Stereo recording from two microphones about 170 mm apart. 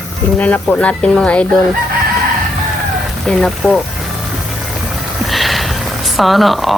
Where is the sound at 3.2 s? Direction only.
5° left (ahead or behind).